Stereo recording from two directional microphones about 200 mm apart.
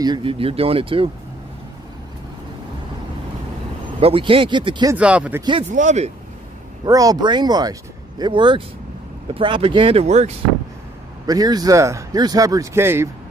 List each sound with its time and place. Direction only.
0.0 s speech: 25° right (ahead or behind)
4.0 s speech: 25° right (ahead or behind)
4.9 s speech: 5° right (ahead or behind)
5.4 s speech: 25° right (ahead or behind)
5.7 s speech: 40° right (ahead or behind)
6.8 s speech: 20° right (ahead or behind); by 10.3 s 35° right (ahead or behind)
11.2 s speech: 20° right (ahead or behind)